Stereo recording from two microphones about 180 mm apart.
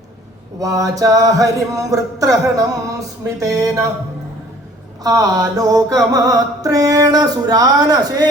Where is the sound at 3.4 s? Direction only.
20° right (ahead or behind).